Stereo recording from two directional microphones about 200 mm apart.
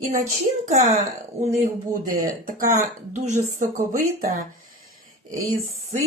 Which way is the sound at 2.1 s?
45° right (ahead or behind).